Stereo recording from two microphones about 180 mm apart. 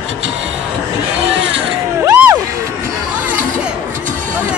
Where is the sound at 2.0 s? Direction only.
15° right (ahead or behind).